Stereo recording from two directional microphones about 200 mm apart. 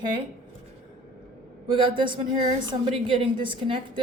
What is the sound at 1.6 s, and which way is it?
A man's voice, 25° right (ahead or behind).